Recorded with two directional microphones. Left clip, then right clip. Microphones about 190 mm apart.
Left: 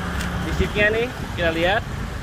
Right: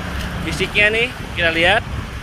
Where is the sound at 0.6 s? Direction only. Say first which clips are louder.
Right 5 dB; 10° right (ahead or behind).